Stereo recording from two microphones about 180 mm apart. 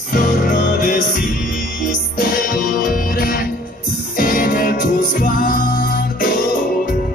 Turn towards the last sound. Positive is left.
turn(degrees=50)  # may be behind; listen again after turning